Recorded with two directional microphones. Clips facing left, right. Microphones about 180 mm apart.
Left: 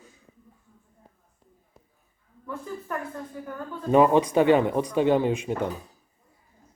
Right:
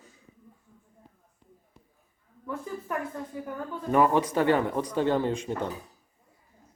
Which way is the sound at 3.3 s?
15° right (ahead or behind).